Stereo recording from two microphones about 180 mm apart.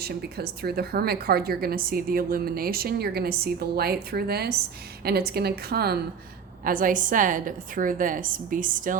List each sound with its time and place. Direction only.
0.0 s a woman's voice: 60° right (ahead or behind)
6.7 s a woman's voice: 50° right (ahead or behind)